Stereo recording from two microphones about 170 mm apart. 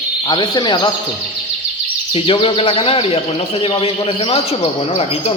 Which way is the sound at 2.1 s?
35° left (ahead or behind).